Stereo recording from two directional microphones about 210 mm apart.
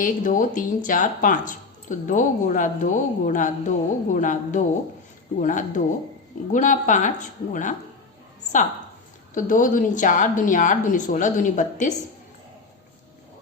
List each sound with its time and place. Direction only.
0.0 s speech: 40° left (ahead or behind)
9.3 s speech: 40° left (ahead or behind)